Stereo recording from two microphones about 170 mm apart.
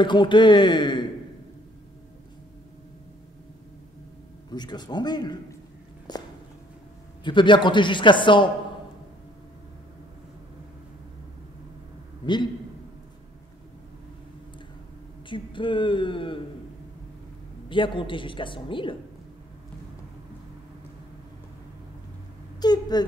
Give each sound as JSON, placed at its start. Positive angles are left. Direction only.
{"t": 0.0, "sound": "a man's voice", "side_deg": 30}
{"t": 4.5, "sound": "a man's voice", "side_deg": 25}
{"t": 7.2, "sound": "a man's voice", "side_deg": 30}
{"t": 15.2, "sound": "a man's voice", "side_deg": 30}
{"t": 17.6, "sound": "a man's voice", "side_deg": 30}
{"t": 22.6, "sound": "a man's voice", "side_deg": 25}